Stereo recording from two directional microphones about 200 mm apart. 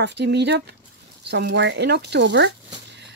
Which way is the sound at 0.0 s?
60° right (ahead or behind).